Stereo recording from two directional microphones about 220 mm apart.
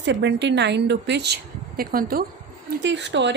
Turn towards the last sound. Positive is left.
turn(degrees=-55)  # may be behind; listen again after turning